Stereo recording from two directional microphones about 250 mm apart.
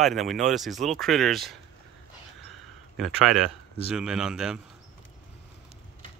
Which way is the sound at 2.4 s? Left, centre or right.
Centre.